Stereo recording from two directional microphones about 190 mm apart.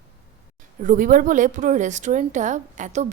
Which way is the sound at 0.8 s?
45° right (ahead or behind).